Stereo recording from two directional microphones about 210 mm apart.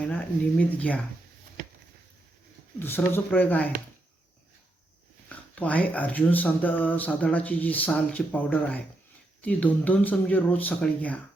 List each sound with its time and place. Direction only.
0.6 s speech: 5° left (ahead or behind)
2.7 s speech: 10° left (ahead or behind)
5.5 s speech: 5° left (ahead or behind)